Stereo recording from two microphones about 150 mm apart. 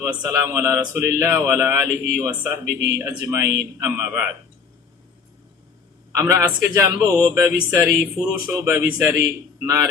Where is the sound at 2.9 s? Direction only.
20° right (ahead or behind).